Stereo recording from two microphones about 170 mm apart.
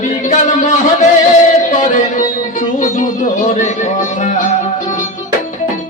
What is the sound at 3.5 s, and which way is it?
Music, 45° left (ahead or behind).